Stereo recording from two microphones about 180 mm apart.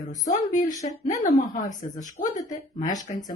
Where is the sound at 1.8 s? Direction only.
35° left (ahead or behind).